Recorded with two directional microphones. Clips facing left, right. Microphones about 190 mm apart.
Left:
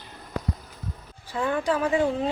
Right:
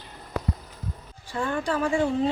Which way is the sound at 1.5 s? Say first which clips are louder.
Left 2 dB; 10° left (ahead or behind).